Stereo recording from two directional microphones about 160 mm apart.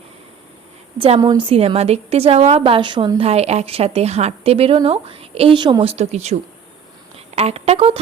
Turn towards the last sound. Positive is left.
turn(degrees=-40)  # may be behind; listen again after turning